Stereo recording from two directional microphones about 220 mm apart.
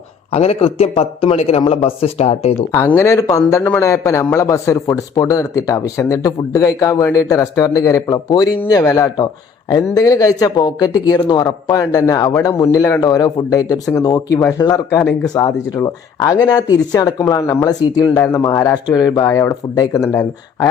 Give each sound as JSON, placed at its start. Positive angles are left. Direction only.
{"t": 0.3, "sound": "speech", "side_deg": 30}
{"t": 2.7, "sound": "a man's voice", "side_deg": 10}